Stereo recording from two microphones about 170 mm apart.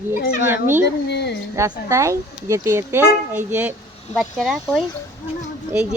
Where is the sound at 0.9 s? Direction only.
80° left.